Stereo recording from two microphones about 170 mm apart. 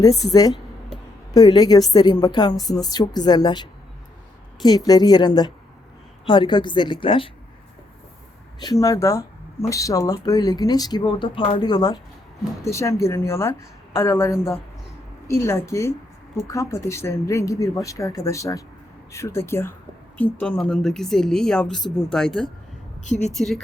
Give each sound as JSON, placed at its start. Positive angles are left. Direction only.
{"t": 0.3, "sound": "speech", "side_deg": 20}
{"t": 8.8, "sound": "a woman's voice", "side_deg": 20}
{"t": 23.0, "sound": "a woman's voice", "side_deg": 40}
{"t": 23.3, "sound": "a woman's voice", "side_deg": 0}